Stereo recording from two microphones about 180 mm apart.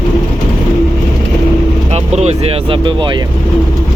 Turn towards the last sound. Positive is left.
turn(degrees=-25)  # may be behind; listen again after turning